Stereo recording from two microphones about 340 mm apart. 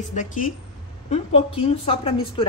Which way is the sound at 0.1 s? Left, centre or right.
Left.